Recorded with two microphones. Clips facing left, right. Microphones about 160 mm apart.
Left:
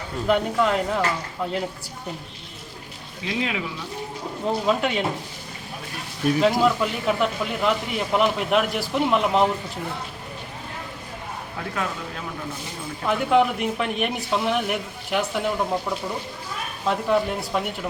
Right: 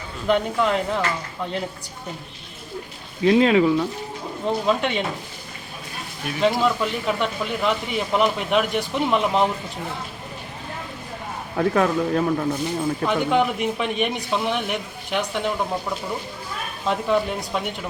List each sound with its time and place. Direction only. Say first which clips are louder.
0.3 s speech: right 1 dB; centre (ahead or behind)
3.2 s speech: right 12 dB; 60° right (ahead or behind)
4.4 s speech: right 1 dB; 5° left (ahead or behind)
6.4 s speech: right 1 dB; 5° left (ahead or behind)
11.5 s speech: right 11 dB; 55° right (ahead or behind)
13.1 s speech: left 3 dB; centre (ahead or behind)
16.8 s speech: even; centre (ahead or behind)